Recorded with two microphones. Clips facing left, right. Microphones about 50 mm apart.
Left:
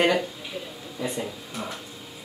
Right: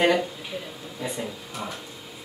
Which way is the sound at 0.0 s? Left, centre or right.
Centre.